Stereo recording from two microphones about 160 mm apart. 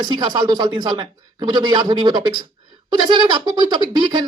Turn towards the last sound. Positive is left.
turn(degrees=-25)  # may be behind; listen again after turning